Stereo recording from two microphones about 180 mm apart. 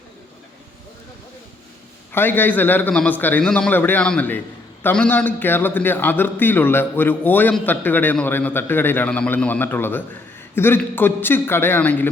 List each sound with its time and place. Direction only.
2.1 s a man's voice: 10° left (ahead or behind)